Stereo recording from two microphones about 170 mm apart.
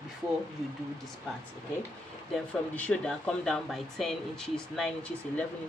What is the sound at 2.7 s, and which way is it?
Speech, 10° left (ahead or behind).